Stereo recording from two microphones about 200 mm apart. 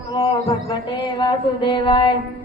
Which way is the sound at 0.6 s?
20° left (ahead or behind).